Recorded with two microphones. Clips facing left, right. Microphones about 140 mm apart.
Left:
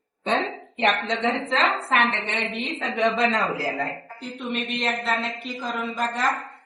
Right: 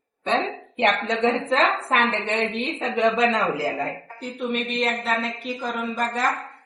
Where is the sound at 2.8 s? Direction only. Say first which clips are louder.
Right 2 dB; 20° right (ahead or behind).